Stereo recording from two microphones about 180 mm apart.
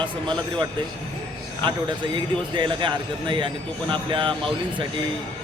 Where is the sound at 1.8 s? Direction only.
25° right (ahead or behind).